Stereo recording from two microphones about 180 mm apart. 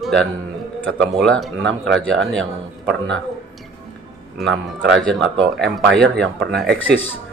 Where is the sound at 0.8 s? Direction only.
5° left (ahead or behind).